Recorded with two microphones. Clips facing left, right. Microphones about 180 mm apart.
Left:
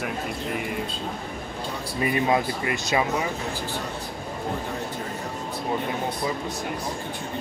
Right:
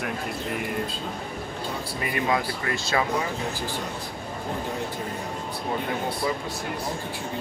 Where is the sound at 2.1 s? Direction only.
25° left (ahead or behind).